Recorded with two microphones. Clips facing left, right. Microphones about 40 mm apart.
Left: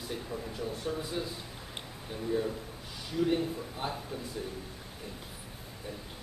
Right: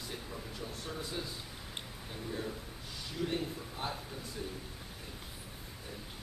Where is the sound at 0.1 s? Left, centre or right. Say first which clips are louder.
Left 8 dB; centre.